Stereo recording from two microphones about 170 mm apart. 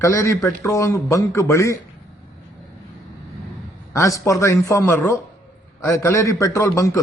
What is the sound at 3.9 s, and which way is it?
A man's voice, 15° left (ahead or behind).